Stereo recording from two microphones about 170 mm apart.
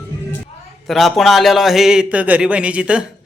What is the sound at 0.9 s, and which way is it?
Speech, centre (ahead or behind).